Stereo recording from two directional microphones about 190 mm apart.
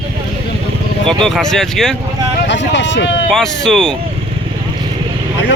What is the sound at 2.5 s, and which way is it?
Speech, 70° left (ahead or behind).